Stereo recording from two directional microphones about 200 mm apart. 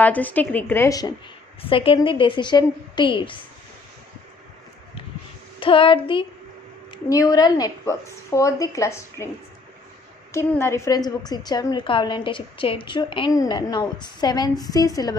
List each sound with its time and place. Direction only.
0.0 s a woman's voice: 10° left (ahead or behind)
1.6 s a woman's voice: 25° left (ahead or behind)
5.6 s a woman's voice: 25° left (ahead or behind)
10.3 s a woman's voice: 15° left (ahead or behind)